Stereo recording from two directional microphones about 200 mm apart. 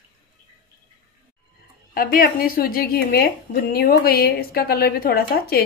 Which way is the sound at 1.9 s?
45° left (ahead or behind).